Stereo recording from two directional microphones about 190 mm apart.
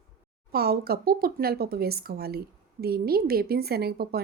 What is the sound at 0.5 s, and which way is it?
Speech, 55° right (ahead or behind).